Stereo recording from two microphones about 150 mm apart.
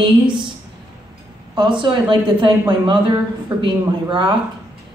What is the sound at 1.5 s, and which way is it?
A woman's voice, 30° right (ahead or behind).